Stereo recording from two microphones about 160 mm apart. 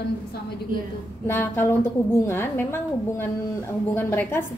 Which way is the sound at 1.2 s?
15° left (ahead or behind).